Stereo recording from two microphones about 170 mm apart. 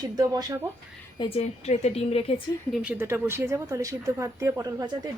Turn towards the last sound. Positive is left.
turn(degrees=-20)  # may be behind; listen again after turning